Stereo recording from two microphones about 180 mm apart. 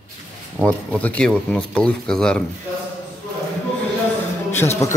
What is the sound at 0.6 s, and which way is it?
A man's voice, 5° left (ahead or behind).